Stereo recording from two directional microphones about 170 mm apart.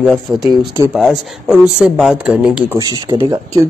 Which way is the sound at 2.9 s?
25° right (ahead or behind).